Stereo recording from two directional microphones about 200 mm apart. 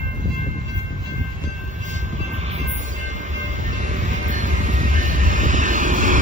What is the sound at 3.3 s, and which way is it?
Music, 40° right (ahead or behind).